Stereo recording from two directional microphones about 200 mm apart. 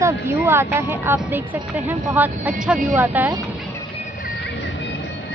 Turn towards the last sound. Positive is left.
turn(degrees=-10)  # may be behind; listen again after turning